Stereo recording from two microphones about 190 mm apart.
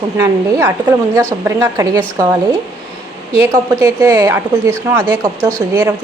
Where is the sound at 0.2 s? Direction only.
15° right (ahead or behind).